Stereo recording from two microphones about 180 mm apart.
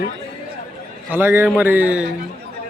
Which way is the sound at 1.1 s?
10° right (ahead or behind).